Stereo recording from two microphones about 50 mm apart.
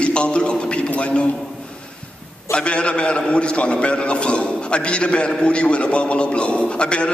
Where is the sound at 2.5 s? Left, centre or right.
Left.